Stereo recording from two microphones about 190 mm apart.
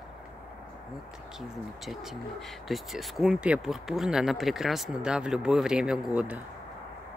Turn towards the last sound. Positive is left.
turn(degrees=-5)  # may be behind; listen again after turning